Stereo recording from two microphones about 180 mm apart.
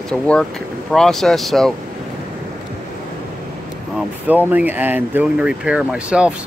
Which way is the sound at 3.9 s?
Centre (ahead or behind).